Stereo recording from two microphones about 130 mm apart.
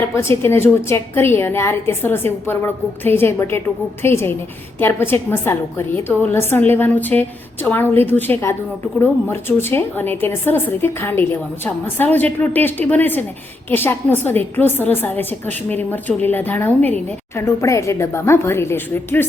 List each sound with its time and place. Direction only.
0.2 s a woman's voice: 20° left (ahead or behind)